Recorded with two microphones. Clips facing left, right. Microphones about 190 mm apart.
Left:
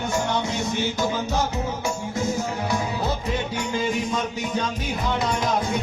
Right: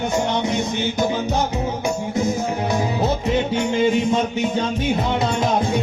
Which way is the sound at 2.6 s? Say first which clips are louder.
Right 6 dB; 20° right (ahead or behind).